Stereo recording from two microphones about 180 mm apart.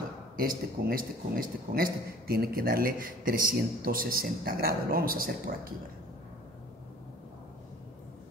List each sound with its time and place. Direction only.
0.4 s a man's voice: 55° right (ahead or behind)